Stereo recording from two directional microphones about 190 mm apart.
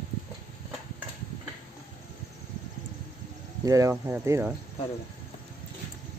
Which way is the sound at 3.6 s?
15° right (ahead or behind).